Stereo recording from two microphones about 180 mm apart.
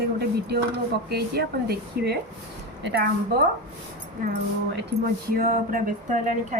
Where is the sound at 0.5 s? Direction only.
60° right (ahead or behind).